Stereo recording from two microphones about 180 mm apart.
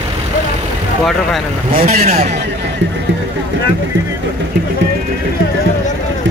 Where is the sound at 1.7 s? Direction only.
50° right (ahead or behind).